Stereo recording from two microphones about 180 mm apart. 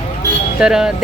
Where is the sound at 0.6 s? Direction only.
5° right (ahead or behind).